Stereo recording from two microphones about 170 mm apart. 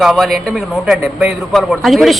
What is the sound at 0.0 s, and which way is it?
A man's voice, centre (ahead or behind).